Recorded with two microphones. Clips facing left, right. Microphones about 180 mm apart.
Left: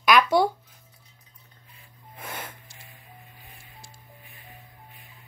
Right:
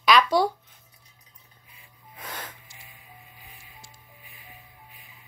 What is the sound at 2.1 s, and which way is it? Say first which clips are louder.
Music: left 1 dB; 10° left (ahead or behind).